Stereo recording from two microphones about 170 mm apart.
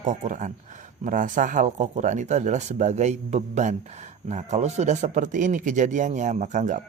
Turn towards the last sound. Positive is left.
turn(degrees=-45)  # may be behind; listen again after turning